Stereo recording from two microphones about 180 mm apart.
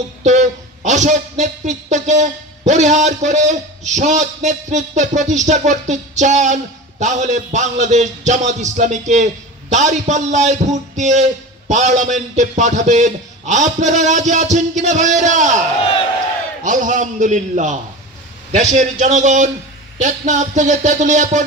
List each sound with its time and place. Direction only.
0.2 s speech: 40° right (ahead or behind)
16.6 s speech: 45° right (ahead or behind)